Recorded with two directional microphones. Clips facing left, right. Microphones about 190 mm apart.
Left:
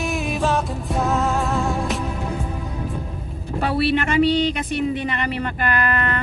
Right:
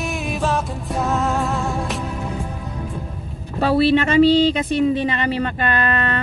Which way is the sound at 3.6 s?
30° right (ahead or behind).